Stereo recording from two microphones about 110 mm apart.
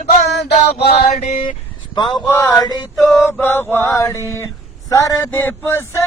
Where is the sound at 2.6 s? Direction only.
35° left (ahead or behind).